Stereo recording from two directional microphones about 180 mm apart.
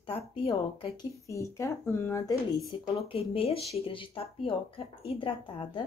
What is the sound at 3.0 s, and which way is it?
Speech, 30° left (ahead or behind).